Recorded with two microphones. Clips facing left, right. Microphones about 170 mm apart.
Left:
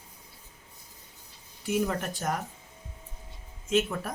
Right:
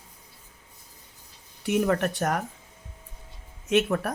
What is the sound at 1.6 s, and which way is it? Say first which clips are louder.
Speech: right 5 dB; 70° right (ahead or behind).